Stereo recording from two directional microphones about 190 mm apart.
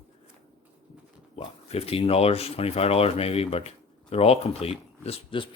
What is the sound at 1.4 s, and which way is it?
Speech, 30° left (ahead or behind).